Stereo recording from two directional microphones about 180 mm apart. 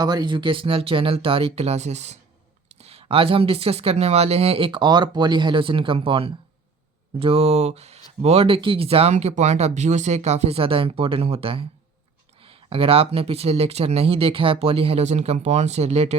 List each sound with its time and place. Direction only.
0.0 s speech: 20° right (ahead or behind)